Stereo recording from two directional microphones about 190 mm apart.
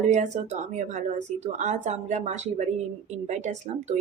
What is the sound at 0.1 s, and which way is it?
Speech, 40° right (ahead or behind).